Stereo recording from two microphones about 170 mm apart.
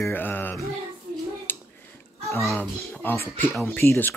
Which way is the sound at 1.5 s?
10° left (ahead or behind).